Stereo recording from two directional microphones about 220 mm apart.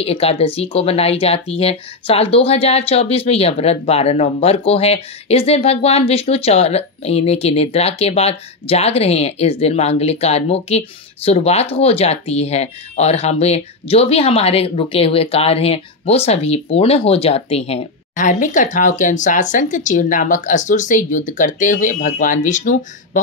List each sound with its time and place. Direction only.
0.0 s speech: 25° left (ahead or behind)